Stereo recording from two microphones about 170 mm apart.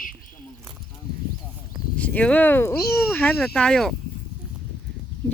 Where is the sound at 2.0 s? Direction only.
10° left (ahead or behind).